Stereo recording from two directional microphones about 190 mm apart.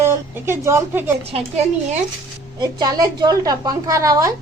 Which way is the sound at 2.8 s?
20° right (ahead or behind).